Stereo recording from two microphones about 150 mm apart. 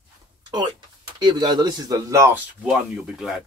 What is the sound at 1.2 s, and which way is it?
Speech, 30° right (ahead or behind).